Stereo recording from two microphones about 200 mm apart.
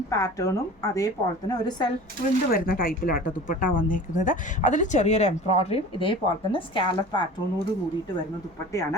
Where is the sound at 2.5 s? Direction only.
45° left (ahead or behind); by 7.2 s 25° left (ahead or behind).